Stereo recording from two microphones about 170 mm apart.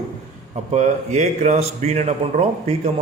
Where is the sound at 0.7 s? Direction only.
45° right (ahead or behind).